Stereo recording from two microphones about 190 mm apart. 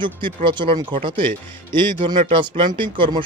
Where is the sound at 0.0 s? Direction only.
25° right (ahead or behind).